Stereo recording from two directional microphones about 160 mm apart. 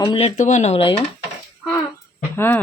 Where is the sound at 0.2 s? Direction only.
45° left (ahead or behind).